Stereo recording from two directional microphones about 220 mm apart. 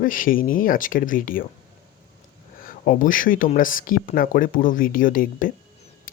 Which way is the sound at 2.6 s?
40° left (ahead or behind).